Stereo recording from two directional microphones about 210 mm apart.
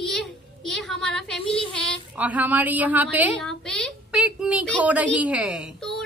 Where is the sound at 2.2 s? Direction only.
5° right (ahead or behind).